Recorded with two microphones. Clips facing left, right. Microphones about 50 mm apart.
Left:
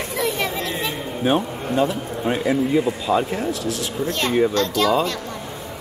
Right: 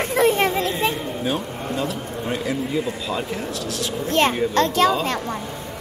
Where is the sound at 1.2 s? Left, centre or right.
Left.